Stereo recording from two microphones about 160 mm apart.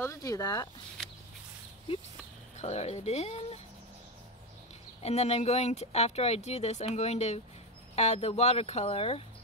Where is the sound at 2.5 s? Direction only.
45° left (ahead or behind).